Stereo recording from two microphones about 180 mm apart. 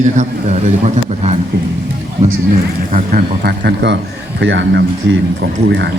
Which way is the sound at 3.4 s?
65° right (ahead or behind).